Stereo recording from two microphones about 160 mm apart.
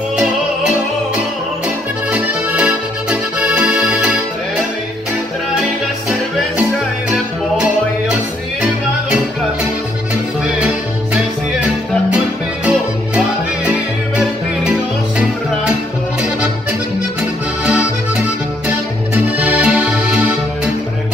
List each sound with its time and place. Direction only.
2.1 s accordion: 5° right (ahead or behind)
17.6 s accordion: 10° right (ahead or behind)
18.7 s music: 10° right (ahead or behind)